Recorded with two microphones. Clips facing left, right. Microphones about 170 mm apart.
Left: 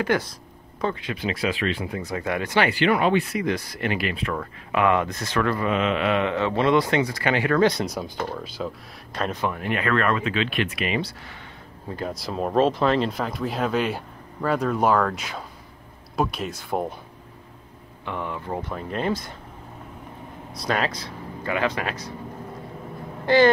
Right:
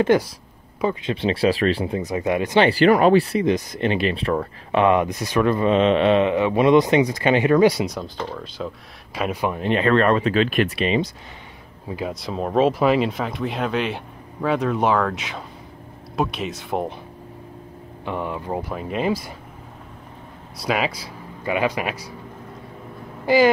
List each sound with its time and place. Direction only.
0.1 s speech: 20° right (ahead or behind)
1.0 s speech: 30° right (ahead or behind)
2.0 s speech: 20° right (ahead or behind)
2.7 s speech: 40° right (ahead or behind)
3.4 s speech: 20° right (ahead or behind)
7.9 s speech: 5° left (ahead or behind)
9.1 s speech: 10° right (ahead or behind); by 10.7 s 45° right (ahead or behind)
10.8 s speech: 25° right (ahead or behind)
11.9 s speech: centre (ahead or behind)
18.0 s speech: 15° right (ahead or behind)
20.5 s speech: 5° right (ahead or behind)
23.2 s speech: 10° right (ahead or behind)